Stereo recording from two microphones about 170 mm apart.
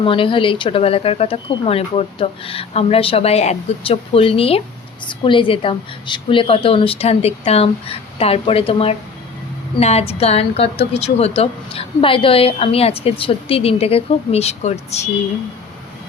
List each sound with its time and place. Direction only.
0.0 s a woman's voice: 30° left (ahead or behind)